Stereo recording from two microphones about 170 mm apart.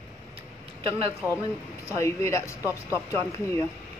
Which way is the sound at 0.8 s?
30° right (ahead or behind).